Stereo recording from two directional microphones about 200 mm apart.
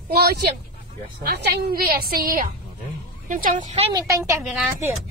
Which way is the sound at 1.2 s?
50° right (ahead or behind).